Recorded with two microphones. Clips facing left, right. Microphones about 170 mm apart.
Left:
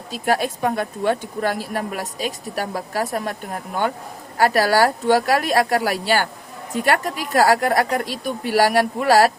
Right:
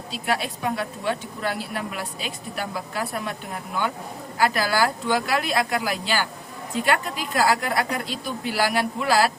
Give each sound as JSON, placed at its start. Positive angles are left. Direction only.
{"t": 0.1, "sound": "speech", "side_deg": 45}